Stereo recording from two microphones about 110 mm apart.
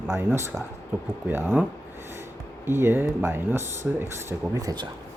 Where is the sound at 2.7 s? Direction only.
20° right (ahead or behind); by 4.9 s 35° right (ahead or behind).